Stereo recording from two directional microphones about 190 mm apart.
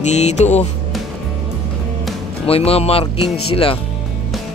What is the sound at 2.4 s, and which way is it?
Speech, 30° left (ahead or behind).